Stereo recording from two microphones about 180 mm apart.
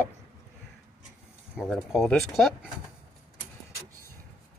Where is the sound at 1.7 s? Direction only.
Centre (ahead or behind).